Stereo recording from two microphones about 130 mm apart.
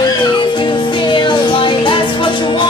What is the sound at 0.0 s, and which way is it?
Music, 35° left (ahead or behind).